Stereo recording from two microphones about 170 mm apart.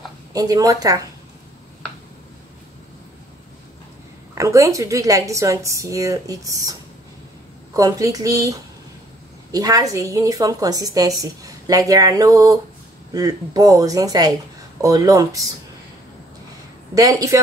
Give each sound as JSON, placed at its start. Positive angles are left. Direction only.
{"t": 0.3, "sound": "a woman's voice", "side_deg": -20}
{"t": 4.4, "sound": "a woman's voice", "side_deg": -20}
{"t": 16.9, "sound": "a woman's voice", "side_deg": -20}